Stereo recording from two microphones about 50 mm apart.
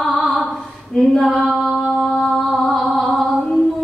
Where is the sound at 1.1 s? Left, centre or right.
Centre.